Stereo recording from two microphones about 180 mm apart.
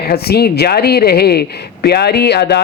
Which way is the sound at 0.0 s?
60° left (ahead or behind).